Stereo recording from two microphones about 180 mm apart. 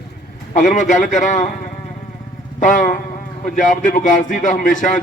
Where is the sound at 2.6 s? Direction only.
45° left (ahead or behind).